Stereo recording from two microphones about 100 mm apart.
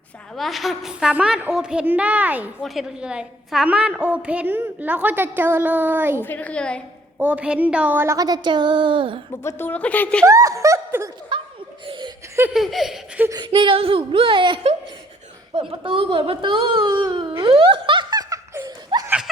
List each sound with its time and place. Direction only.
0.3 s a woman's voice: centre (ahead or behind); by 2.5 s 15° right (ahead or behind)
2.6 s a woman's voice: centre (ahead or behind); by 6.2 s 20° right (ahead or behind)
6.2 s a woman's voice: 15° left (ahead or behind)
7.2 s a woman's voice: 15° right (ahead or behind)
8.0 s speech: 35° right (ahead or behind); by 9.2 s 60° right (ahead or behind)
9.3 s a woman's voice: 25° left (ahead or behind)
10.2 s speech: 30° right (ahead or behind)
11.3 s laughter: 55° right (ahead or behind)
12.5 s laughter: centre (ahead or behind)
13.2 s a woman's voice: 15° right (ahead or behind)
13.6 s speech: 65° right (ahead or behind)
15.7 s speech: 60° right (ahead or behind)
18.2 s laughter: 35° right (ahead or behind)
18.9 s laughter: 50° right (ahead or behind)